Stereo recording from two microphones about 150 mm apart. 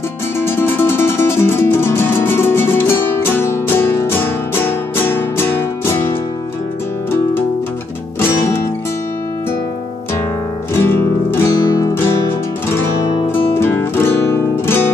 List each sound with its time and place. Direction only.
0.4 s music: 15° left (ahead or behind)
8.2 s music: 15° left (ahead or behind)
10.7 s music: 15° left (ahead or behind)
11.6 s guitar: 20° left (ahead or behind)
13.6 s music: 15° left (ahead or behind)